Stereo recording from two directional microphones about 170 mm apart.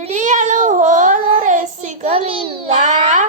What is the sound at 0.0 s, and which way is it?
Cat, 45° right (ahead or behind).